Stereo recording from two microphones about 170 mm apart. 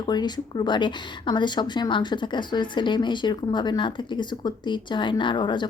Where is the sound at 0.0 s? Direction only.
25° left (ahead or behind).